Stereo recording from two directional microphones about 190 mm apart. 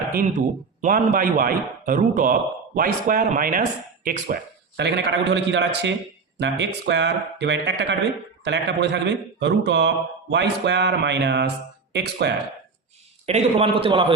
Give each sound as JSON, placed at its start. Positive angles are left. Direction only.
{"t": 0.1, "sound": "a man's voice", "side_deg": -40}
{"t": 4.8, "sound": "a man's voice", "side_deg": -65}
{"t": 13.2, "sound": "a man's voice", "side_deg": -30}